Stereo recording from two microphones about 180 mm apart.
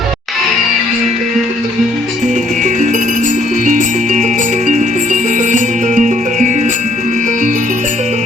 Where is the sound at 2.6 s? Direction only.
45° right (ahead or behind).